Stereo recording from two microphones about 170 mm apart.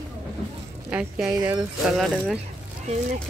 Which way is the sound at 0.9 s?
5° right (ahead or behind).